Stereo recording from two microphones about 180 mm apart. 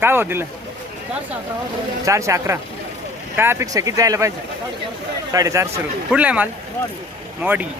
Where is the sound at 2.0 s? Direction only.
15° right (ahead or behind).